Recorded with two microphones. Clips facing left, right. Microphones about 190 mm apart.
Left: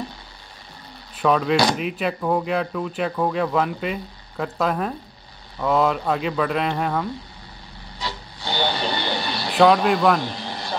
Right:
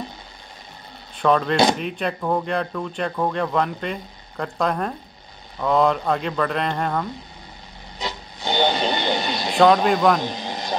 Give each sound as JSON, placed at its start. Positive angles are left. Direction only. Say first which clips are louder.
{"t": 1.1, "sound": "speech", "louder": "even", "side_deg": 5}
{"t": 8.0, "sound": "vehicle", "louder": "right 2 dB", "side_deg": -20}